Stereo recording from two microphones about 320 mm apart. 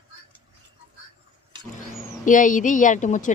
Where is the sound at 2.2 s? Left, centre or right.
Left.